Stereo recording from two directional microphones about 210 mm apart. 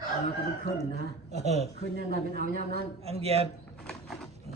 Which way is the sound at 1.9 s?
45° right (ahead or behind).